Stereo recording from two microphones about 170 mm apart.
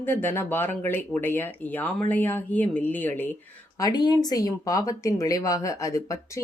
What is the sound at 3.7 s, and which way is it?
Speech, 25° left (ahead or behind).